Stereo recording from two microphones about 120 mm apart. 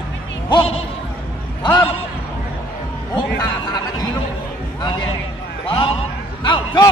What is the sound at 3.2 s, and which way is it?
Chatter, 35° left (ahead or behind).